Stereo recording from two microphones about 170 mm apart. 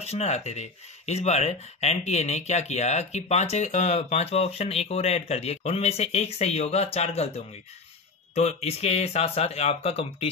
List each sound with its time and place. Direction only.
0.0 s speech: 40° left (ahead or behind)